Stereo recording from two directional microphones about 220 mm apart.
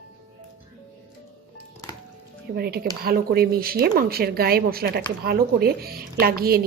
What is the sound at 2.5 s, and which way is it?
Speech, 45° right (ahead or behind).